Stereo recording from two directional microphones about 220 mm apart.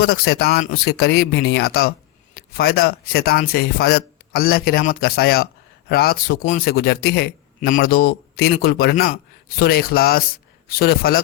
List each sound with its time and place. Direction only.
0.0 s a man's voice: 45° left (ahead or behind)